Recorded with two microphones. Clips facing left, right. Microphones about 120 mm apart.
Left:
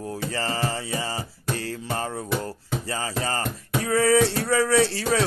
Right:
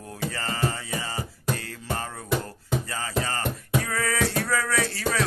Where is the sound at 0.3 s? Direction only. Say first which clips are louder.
Left 2 dB; 30° left (ahead or behind).